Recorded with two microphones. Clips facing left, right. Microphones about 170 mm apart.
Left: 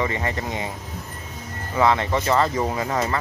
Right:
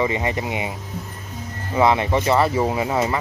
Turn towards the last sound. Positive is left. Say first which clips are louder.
# right 3 dB
turn(degrees=-15)  # may be behind; listen again after turning